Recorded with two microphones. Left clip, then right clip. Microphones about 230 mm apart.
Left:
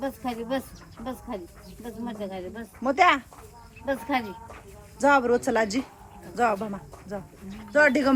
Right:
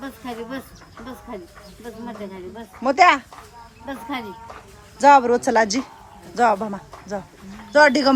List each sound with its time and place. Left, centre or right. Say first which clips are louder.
0.0 s speech: left 1 dB; centre
2.8 s speech: right 6 dB; centre
4.9 s speech: right 7 dB; centre